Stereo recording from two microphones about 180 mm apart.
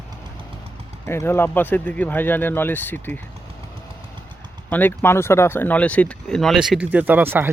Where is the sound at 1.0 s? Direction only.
15° left (ahead or behind).